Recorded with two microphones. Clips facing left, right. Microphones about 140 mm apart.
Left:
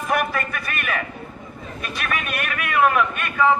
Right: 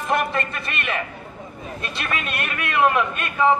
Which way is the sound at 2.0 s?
25° right (ahead or behind).